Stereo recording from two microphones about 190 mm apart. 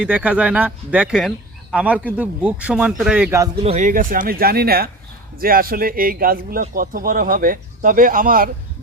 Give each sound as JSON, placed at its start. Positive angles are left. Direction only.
{"t": 0.0, "sound": "a man's voice", "side_deg": -5}
{"t": 3.6, "sound": "a man's voice", "side_deg": -35}